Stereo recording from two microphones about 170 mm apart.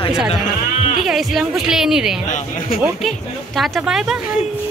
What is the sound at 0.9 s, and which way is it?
Speech, centre (ahead or behind).